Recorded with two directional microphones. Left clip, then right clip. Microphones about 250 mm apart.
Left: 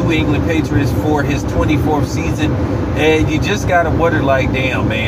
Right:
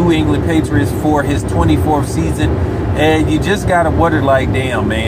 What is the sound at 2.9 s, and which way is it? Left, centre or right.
Speech, centre.